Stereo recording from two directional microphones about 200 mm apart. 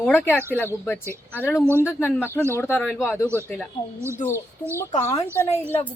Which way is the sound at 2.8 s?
5° right (ahead or behind).